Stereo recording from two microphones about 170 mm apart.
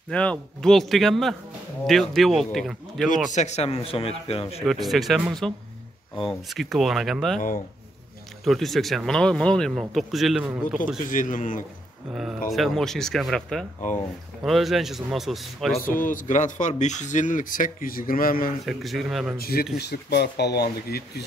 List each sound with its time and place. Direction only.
0.1 s speech: 5° left (ahead or behind)
3.3 s speech: 45° left (ahead or behind)
4.6 s speech: centre (ahead or behind)
7.3 s speech: 55° left (ahead or behind)
8.5 s speech: centre (ahead or behind)
11.1 s speech: 50° left (ahead or behind)
12.1 s speech: centre (ahead or behind)
15.8 s speech: 55° left (ahead or behind)
18.7 s speech: centre (ahead or behind)
19.3 s speech: 65° left (ahead or behind)
19.8 s speech: 75° left (ahead or behind)